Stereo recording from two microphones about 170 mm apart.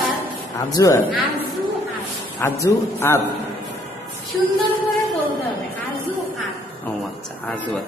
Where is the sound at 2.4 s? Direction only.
15° left (ahead or behind).